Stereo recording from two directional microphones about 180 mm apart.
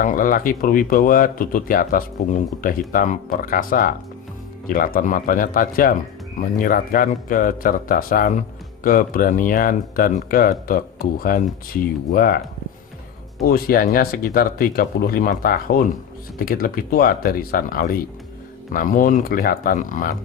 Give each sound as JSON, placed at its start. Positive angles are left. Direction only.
{"t": 0.0, "sound": "speech", "side_deg": 50}
{"t": 13.4, "sound": "speech", "side_deg": 55}